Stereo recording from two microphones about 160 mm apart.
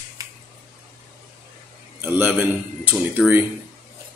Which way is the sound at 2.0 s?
10° right (ahead or behind).